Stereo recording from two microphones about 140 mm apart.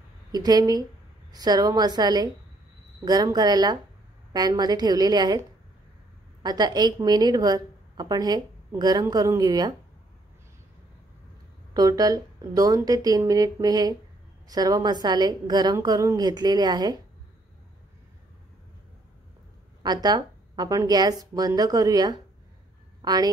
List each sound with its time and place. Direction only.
0.3 s a woman's voice: 30° right (ahead or behind)
6.4 s a woman's voice: 30° right (ahead or behind)
11.7 s a woman's voice: 25° right (ahead or behind)
19.8 s a woman's voice: 30° right (ahead or behind)